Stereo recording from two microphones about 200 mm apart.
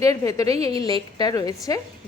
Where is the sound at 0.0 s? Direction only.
15° left (ahead or behind).